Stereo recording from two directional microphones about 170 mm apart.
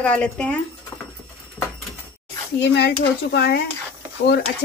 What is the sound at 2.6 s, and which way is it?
Speech, 80° left.